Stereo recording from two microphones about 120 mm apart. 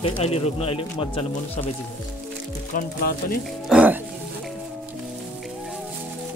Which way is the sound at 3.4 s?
5° right (ahead or behind).